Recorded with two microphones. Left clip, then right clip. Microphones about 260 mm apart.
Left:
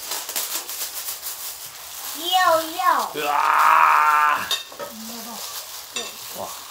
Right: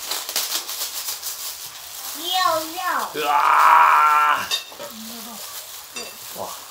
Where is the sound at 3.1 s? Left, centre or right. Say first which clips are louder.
Right 2 dB; centre.